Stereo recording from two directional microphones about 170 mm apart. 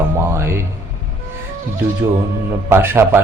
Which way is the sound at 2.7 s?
15° right (ahead or behind).